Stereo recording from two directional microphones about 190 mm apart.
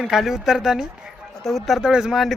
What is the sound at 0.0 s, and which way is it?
A man's voice, centre (ahead or behind).